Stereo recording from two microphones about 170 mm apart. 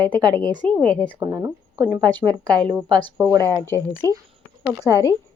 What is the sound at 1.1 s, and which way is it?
Speech, 20° right (ahead or behind).